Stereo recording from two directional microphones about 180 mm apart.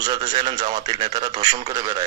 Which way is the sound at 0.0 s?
25° right (ahead or behind).